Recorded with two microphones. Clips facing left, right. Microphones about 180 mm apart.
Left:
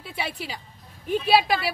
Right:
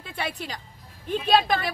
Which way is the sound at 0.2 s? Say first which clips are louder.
Right 1 dB; 10° left (ahead or behind).